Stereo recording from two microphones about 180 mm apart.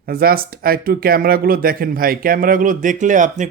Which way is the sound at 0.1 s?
55° right (ahead or behind).